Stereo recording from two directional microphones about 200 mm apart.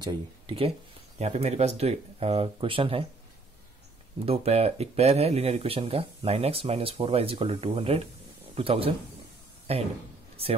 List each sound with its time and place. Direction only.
0.0 s speech: 25° right (ahead or behind)
4.3 s speech: 30° right (ahead or behind)